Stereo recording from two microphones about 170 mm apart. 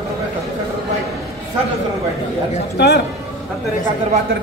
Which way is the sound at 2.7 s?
75° left (ahead or behind).